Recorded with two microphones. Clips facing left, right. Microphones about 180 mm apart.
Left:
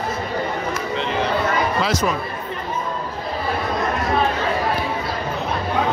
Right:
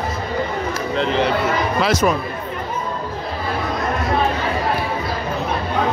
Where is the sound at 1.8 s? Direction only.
65° right (ahead or behind).